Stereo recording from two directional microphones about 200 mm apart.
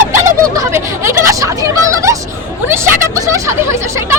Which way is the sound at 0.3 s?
15° right (ahead or behind).